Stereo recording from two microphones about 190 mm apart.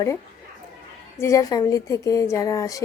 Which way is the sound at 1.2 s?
15° left (ahead or behind).